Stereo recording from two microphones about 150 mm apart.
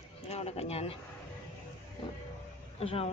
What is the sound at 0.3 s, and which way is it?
Speech, 45° left (ahead or behind).